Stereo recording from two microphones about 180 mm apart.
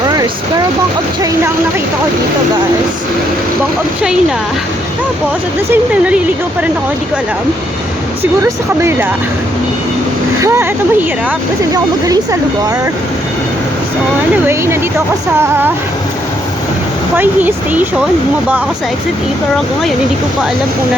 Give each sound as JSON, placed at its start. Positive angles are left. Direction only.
{"t": 5.7, "sound": "speech", "side_deg": -5}
{"t": 8.2, "sound": "speech", "side_deg": -15}
{"t": 11.7, "sound": "speech", "side_deg": -20}
{"t": 14.4, "sound": "speech", "side_deg": -15}
{"t": 17.2, "sound": "speech", "side_deg": -10}